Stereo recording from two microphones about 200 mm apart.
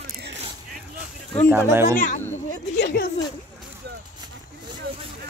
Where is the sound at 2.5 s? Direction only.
60° left (ahead or behind).